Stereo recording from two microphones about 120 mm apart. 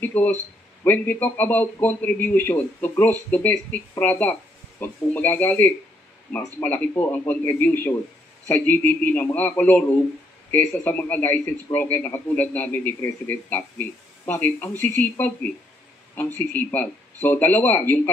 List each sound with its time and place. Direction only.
0.0 s a man's voice: 15° left (ahead or behind)
16.3 s a man's voice: 15° left (ahead or behind)